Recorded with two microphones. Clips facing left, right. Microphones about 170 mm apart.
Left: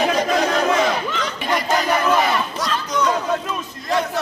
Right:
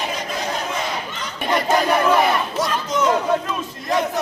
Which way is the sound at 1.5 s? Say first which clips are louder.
Right 2 dB; 10° right (ahead or behind).